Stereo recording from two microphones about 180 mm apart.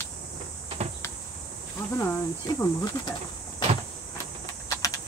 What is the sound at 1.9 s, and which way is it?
Speech, 20° left (ahead or behind).